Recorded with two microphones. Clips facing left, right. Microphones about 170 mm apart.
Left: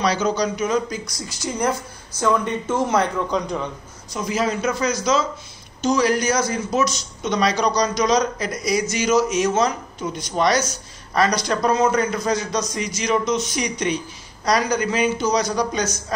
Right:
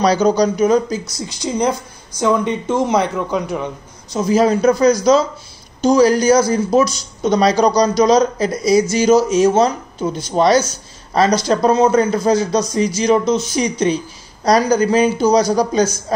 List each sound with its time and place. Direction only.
0.0 s a man's voice: 35° right (ahead or behind)
1.1 s a woman's voice: 20° right (ahead or behind)
4.1 s a man's voice: 35° right (ahead or behind)